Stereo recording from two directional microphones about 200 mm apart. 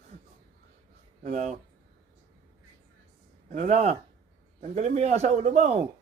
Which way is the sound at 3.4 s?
35° right (ahead or behind).